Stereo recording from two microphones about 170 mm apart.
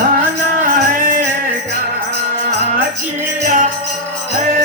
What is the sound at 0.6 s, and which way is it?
Music, 55° right (ahead or behind).